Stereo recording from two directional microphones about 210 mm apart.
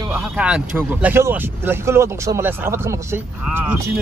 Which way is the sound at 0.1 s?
5° right (ahead or behind).